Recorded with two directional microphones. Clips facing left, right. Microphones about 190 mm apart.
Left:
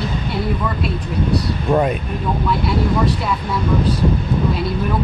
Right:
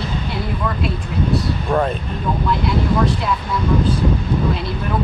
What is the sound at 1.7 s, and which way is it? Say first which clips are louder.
Speech: left 2 dB; 15° left (ahead or behind).